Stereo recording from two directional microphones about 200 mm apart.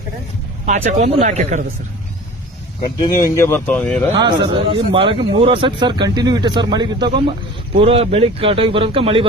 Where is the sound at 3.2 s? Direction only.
15° left (ahead or behind).